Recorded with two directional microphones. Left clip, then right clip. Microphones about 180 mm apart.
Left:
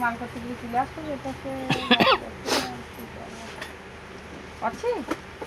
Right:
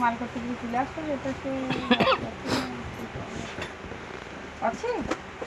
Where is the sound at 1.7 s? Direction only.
90° left.